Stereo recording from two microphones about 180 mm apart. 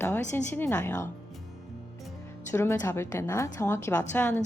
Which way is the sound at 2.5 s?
15° left (ahead or behind).